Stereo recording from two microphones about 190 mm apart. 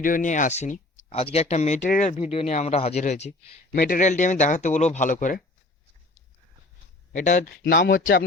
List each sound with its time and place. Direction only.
0.0 s speech: 45° left (ahead or behind)
3.7 s speech: 50° left (ahead or behind)
7.1 s speech: 40° left (ahead or behind)
7.6 s speech: 60° left (ahead or behind)